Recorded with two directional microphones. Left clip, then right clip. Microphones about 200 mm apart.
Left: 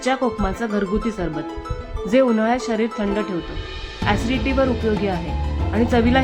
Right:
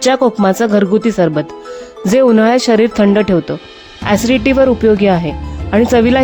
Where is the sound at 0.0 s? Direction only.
50° right (ahead or behind).